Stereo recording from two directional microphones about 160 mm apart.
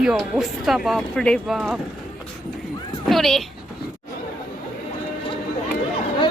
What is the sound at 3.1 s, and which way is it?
Speech, centre (ahead or behind).